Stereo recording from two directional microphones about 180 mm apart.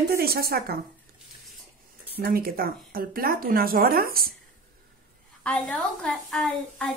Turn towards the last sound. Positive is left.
turn(degrees=5)  # may be behind; listen again after turning